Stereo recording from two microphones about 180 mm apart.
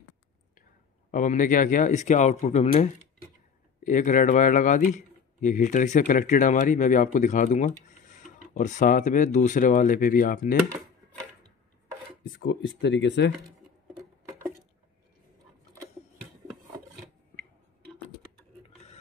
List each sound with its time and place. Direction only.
1.1 s a man's voice: 45° left (ahead or behind)
3.8 s a man's voice: 45° left (ahead or behind)
12.4 s speech: 80° left